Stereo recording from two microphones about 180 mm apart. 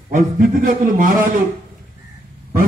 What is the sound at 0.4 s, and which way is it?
Speech, 50° right (ahead or behind).